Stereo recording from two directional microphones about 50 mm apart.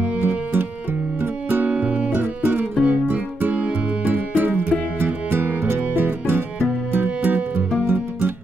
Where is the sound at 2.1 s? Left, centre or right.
Right.